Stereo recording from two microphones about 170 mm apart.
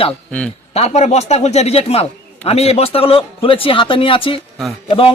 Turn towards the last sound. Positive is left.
turn(degrees=30)  # may be behind; listen again after turning